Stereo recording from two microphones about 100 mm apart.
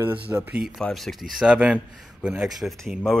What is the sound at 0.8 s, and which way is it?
Speech, 5° left (ahead or behind).